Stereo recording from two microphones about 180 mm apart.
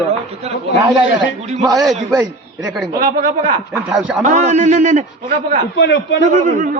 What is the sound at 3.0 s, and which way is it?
Speech, 50° right (ahead or behind).